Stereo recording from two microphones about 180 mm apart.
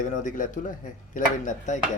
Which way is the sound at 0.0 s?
45° left (ahead or behind).